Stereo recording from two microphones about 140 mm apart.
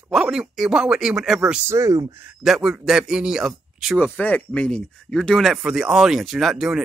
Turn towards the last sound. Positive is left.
turn(degrees=-5)  # may be behind; listen again after turning